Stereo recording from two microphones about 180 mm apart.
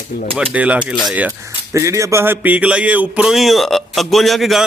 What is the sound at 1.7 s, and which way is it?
Speech, 15° right (ahead or behind).